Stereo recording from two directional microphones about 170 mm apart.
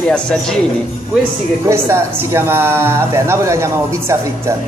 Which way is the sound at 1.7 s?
15° right (ahead or behind).